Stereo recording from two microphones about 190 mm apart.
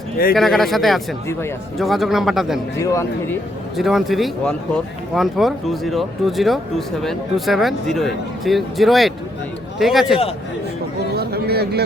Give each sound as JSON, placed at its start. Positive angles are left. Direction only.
{"t": 0.3, "sound": "speech", "side_deg": 0}
{"t": 2.7, "sound": "speech", "side_deg": 15}
{"t": 3.8, "sound": "speech", "side_deg": 0}
{"t": 11.1, "sound": "chatter", "side_deg": -55}